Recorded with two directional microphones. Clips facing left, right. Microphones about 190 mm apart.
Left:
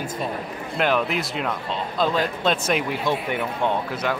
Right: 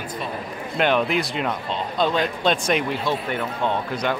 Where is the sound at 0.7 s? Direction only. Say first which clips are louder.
Right 2 dB; centre (ahead or behind).